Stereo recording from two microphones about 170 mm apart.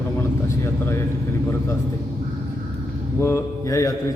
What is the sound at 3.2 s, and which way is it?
Speech, 15° left (ahead or behind).